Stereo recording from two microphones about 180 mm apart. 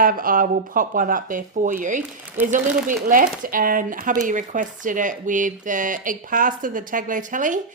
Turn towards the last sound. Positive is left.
turn(degrees=-45)  # may be behind; listen again after turning